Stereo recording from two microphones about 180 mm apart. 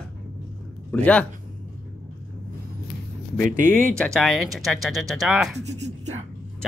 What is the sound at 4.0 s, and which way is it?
Speech, centre (ahead or behind).